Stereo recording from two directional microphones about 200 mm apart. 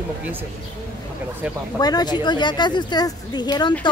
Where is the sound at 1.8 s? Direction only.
20° left (ahead or behind).